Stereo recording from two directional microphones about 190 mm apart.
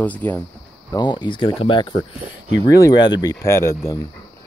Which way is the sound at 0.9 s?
25° left (ahead or behind).